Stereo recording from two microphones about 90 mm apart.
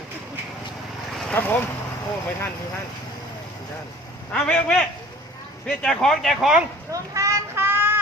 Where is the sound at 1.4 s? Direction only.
25° left (ahead or behind).